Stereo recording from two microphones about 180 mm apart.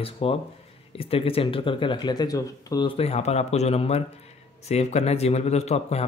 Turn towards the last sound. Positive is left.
turn(degrees=35)  # may be behind; listen again after turning